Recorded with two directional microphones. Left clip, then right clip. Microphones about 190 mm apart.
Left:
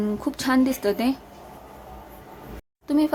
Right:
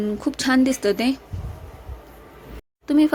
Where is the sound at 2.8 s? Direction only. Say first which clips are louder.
Right 4 dB; 15° right (ahead or behind).